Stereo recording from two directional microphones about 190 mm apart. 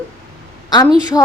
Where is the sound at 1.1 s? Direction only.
20° left (ahead or behind).